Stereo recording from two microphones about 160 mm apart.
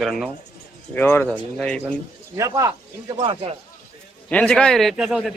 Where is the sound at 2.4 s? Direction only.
20° right (ahead or behind).